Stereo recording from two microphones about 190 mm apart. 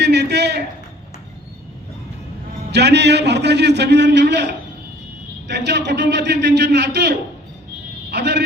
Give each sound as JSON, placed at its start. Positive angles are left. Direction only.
{"t": 0.0, "sound": "a man's voice", "side_deg": -60}
{"t": 2.7, "sound": "a man's voice", "side_deg": -60}
{"t": 8.1, "sound": "a sound", "side_deg": -60}